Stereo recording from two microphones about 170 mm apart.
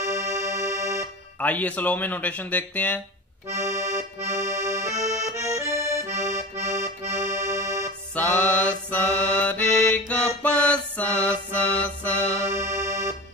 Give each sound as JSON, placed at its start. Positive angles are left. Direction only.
{"t": 0.0, "sound": "music", "side_deg": -15}
{"t": 1.4, "sound": "speech", "side_deg": 10}
{"t": 3.4, "sound": "accordion", "side_deg": -15}
{"t": 8.1, "sound": "music", "side_deg": 10}
{"t": 12.4, "sound": "music", "side_deg": -15}